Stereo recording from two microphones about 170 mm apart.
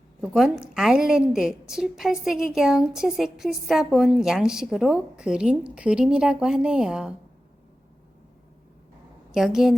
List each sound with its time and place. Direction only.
0.2 s a woman's voice: centre (ahead or behind)
9.3 s a woman's voice: 5° right (ahead or behind)